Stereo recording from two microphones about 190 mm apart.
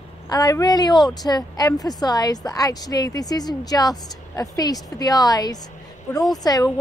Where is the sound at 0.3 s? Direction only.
20° left (ahead or behind).